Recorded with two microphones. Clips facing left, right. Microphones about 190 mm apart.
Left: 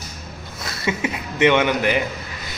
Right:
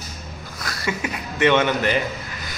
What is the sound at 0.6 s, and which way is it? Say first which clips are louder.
A man's voice: left 3 dB; 25° left (ahead or behind).